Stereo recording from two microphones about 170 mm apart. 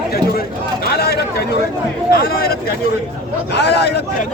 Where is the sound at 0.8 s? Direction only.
70° left (ahead or behind).